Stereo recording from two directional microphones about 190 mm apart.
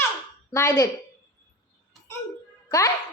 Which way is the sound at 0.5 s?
15° left (ahead or behind).